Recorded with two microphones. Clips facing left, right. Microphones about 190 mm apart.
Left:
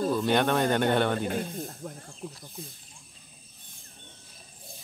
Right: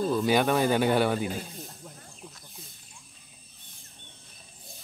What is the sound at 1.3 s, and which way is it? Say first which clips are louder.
Speech: left 5 dB; 55° left (ahead or behind).